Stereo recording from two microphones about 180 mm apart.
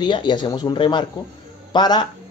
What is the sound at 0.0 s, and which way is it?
Speech, 25° left (ahead or behind).